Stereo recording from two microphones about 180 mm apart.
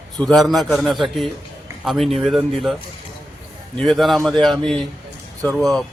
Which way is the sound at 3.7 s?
Centre (ahead or behind).